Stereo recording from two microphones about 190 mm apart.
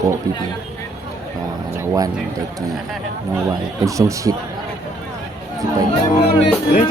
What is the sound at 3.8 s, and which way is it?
Speech, 15° right (ahead or behind).